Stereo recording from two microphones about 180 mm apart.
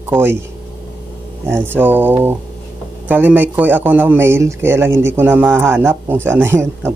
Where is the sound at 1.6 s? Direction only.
10° right (ahead or behind).